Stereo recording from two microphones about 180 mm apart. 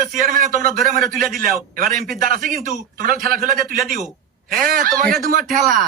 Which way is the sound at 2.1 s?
50° right (ahead or behind).